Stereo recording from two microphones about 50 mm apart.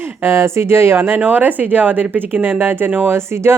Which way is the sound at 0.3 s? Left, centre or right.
Right.